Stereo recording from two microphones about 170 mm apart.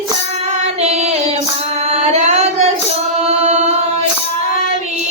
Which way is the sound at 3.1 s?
40° right (ahead or behind).